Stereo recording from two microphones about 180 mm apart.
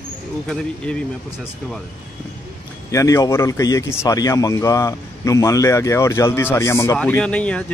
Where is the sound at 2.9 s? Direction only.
15° left (ahead or behind).